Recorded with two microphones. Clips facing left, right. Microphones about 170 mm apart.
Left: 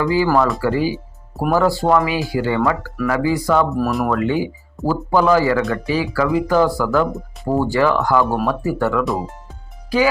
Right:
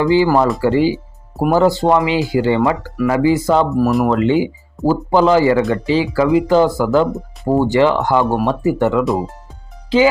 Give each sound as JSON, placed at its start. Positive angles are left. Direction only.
{"t": 0.0, "sound": "speech", "side_deg": -25}